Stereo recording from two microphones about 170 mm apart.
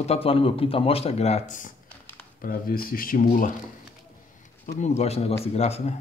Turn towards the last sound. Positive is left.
turn(degrees=40)  # may be behind; listen again after turning